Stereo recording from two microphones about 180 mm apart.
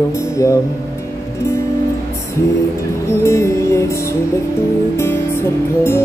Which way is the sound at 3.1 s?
15° left (ahead or behind).